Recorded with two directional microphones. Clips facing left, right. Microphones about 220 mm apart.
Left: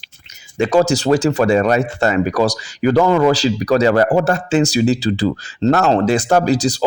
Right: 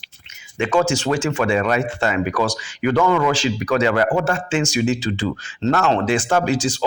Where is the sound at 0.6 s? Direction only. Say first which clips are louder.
Left 4 dB; 35° left (ahead or behind).